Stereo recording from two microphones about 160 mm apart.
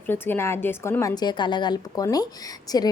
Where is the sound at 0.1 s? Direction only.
15° left (ahead or behind).